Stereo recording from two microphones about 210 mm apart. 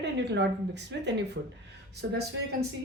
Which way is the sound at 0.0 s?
55° right (ahead or behind).